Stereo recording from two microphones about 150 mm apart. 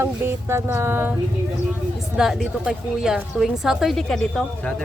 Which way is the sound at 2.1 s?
Centre (ahead or behind).